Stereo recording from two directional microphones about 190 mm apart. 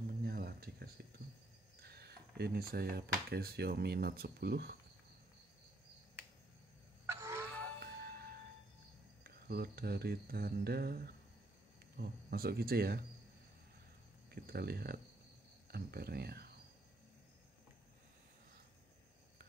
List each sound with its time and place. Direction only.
0.2 s a sound: 55° right (ahead or behind)
1.8 s speech: 55° right (ahead or behind)
7.1 s a sound: 15° right (ahead or behind)
7.8 s music: 55° right (ahead or behind)
9.2 s speech: 55° right (ahead or behind)
12.0 s speech: 55° right (ahead or behind)
14.3 s speech: 55° right (ahead or behind)